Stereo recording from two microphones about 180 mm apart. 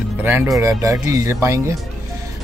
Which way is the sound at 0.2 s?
15° right (ahead or behind).